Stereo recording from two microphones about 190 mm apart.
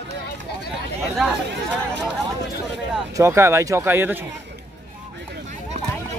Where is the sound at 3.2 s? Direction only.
15° right (ahead or behind).